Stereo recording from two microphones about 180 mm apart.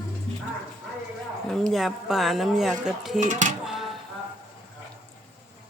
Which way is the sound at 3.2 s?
45° right (ahead or behind).